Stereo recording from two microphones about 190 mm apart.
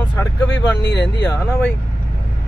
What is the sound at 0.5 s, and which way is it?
Speech, 65° left (ahead or behind).